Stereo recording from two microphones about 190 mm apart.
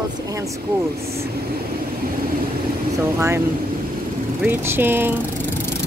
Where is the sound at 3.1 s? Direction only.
15° right (ahead or behind).